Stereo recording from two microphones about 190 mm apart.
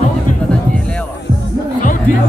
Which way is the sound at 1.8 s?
45° left (ahead or behind).